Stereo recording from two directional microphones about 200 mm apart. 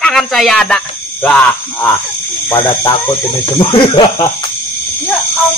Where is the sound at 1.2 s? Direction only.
10° left (ahead or behind).